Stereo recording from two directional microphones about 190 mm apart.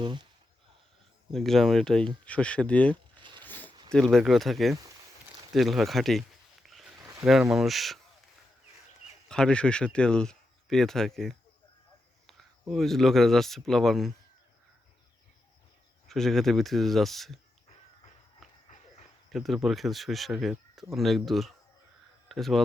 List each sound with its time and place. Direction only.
0.0 s speech: 25° right (ahead or behind)
1.3 s speech: centre (ahead or behind)
3.4 s a sound: 10° left (ahead or behind)
3.8 s speech: 5° left (ahead or behind)
5.5 s a sound: centre (ahead or behind)
7.0 s a sound: 20° right (ahead or behind)
7.5 s speech: centre (ahead or behind)
9.3 s speech: 5° left (ahead or behind)
16.0 s speech: centre (ahead or behind)
19.3 s speech: centre (ahead or behind)